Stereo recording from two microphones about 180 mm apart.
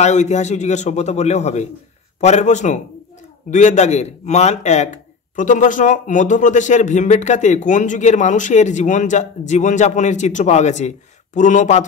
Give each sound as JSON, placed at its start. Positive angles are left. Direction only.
{"t": 0.0, "sound": "a man's voice", "side_deg": 40}